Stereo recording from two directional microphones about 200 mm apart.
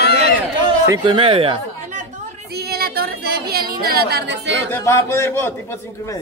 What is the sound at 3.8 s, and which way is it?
Speech, 50° right (ahead or behind).